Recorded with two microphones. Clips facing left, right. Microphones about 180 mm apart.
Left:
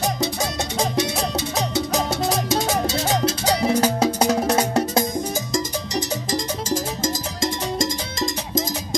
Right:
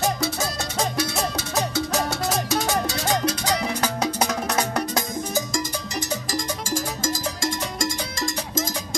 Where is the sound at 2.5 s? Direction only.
25° left (ahead or behind).